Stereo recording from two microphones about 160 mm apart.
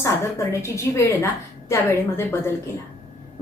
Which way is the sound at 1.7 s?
15° left (ahead or behind).